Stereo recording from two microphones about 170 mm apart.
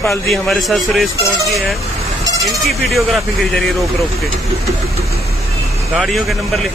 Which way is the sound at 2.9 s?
Centre (ahead or behind).